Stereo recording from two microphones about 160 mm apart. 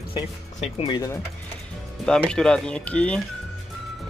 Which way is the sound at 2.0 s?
5° left (ahead or behind).